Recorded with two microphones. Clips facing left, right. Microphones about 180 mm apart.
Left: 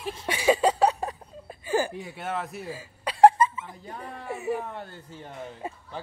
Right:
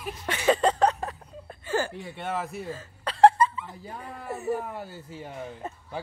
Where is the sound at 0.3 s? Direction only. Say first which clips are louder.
Left 1 dB; 10° left (ahead or behind).